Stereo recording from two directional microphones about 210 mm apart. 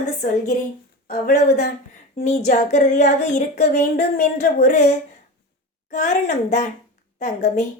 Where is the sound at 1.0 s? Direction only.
40° left (ahead or behind).